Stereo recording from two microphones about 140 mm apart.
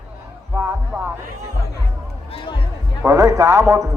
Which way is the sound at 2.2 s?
40° left (ahead or behind).